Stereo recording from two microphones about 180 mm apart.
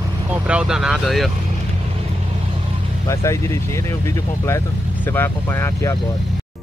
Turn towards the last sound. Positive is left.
turn(degrees=15)  # may be behind; listen again after turning